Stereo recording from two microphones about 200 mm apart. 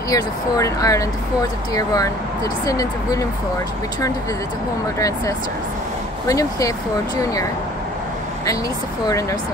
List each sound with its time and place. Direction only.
0.1 s speech: 15° left (ahead or behind)
4.9 s speech: 15° left (ahead or behind)
9.0 s speech: 15° left (ahead or behind)